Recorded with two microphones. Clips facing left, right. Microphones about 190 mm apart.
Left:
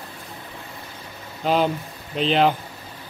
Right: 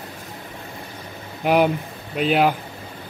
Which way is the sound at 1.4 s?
15° right (ahead or behind).